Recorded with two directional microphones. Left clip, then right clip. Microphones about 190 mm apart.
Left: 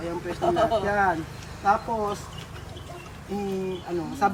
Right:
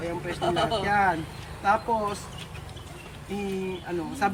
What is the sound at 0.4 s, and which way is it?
Speech, 20° left (ahead or behind).